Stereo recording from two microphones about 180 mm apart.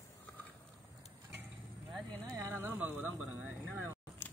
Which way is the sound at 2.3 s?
15° right (ahead or behind).